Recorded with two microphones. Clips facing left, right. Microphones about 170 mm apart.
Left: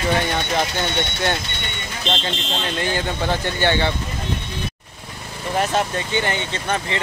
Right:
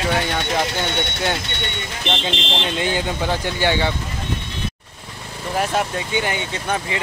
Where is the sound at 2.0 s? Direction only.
15° right (ahead or behind).